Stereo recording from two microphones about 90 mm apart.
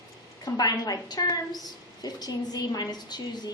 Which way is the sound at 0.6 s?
45° left (ahead or behind).